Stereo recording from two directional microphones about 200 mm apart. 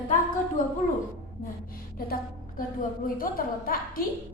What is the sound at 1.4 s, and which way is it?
A woman's voice, 45° left (ahead or behind).